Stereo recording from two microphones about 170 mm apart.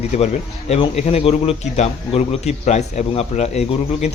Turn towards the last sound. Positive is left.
turn(degrees=40)  # may be behind; listen again after turning